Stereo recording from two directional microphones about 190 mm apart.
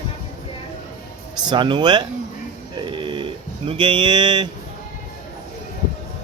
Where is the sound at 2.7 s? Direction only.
25° right (ahead or behind).